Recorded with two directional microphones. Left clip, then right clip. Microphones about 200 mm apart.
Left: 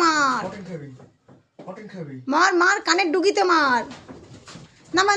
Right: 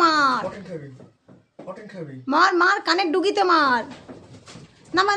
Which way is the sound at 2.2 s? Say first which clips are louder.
Even; 5° left (ahead or behind).